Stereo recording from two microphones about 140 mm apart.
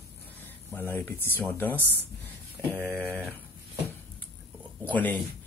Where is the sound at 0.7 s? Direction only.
15° left (ahead or behind).